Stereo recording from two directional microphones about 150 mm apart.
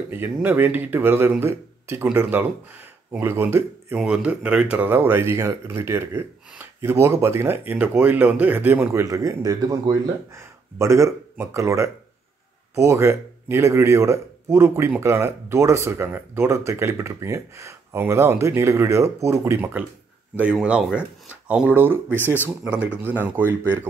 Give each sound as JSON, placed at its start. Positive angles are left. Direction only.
{"t": 0.1, "sound": "a man's voice", "side_deg": -15}